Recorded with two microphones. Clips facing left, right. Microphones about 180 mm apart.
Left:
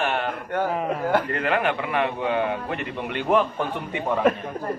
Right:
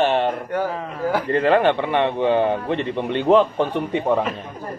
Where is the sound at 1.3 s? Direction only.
30° right (ahead or behind).